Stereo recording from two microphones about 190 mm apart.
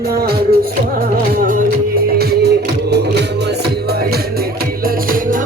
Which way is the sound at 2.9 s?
60° right (ahead or behind).